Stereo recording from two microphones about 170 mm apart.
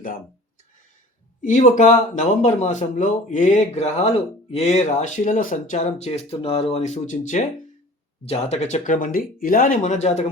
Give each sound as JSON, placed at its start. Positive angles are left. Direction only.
{"t": 1.4, "sound": "speech", "side_deg": 45}